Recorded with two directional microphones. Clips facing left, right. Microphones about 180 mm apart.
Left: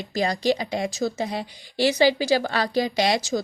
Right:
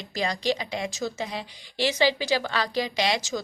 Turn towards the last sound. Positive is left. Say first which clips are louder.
# left 4 dB
turn(degrees=40)  # may be behind; listen again after turning